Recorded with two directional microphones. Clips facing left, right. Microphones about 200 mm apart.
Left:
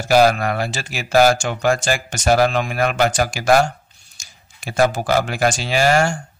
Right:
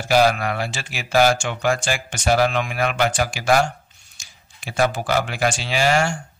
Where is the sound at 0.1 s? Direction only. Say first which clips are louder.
Left 3 dB; 45° left (ahead or behind).